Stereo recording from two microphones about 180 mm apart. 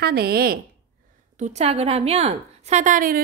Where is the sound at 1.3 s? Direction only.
40° right (ahead or behind).